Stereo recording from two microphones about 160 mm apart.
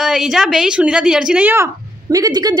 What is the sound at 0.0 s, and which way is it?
A woman's voice, 5° right (ahead or behind).